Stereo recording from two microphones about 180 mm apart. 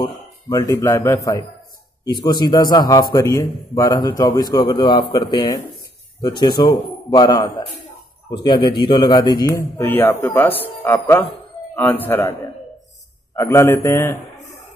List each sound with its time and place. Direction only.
0.0 s a man's voice: 20° left (ahead or behind)
13.4 s a man's voice: 15° left (ahead or behind)